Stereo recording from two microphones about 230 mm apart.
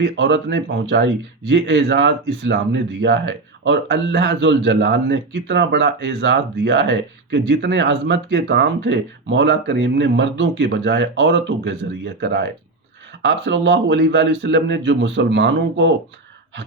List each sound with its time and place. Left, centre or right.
0.0 s speech: right